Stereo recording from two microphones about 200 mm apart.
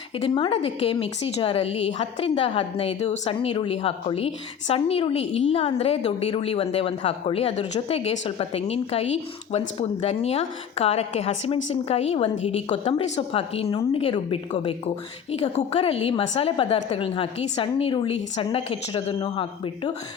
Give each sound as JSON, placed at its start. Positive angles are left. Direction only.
{"t": 0.2, "sound": "a woman's voice", "side_deg": 25}